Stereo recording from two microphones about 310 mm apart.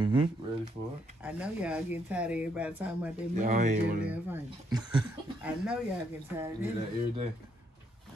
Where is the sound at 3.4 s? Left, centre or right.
Right.